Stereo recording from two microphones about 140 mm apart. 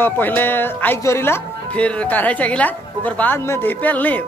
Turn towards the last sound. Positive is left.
turn(degrees=10)  # may be behind; listen again after turning